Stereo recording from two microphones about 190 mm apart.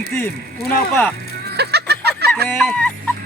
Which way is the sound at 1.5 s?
60° right (ahead or behind).